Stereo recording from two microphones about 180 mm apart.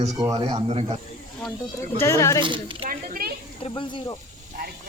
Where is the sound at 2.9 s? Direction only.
55° right (ahead or behind).